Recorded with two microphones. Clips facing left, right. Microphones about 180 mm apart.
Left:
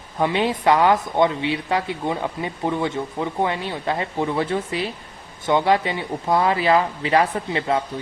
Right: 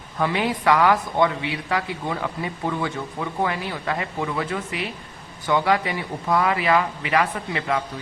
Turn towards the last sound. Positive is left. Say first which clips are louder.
# left 3 dB
turn(degrees=30)  # may be behind; listen again after turning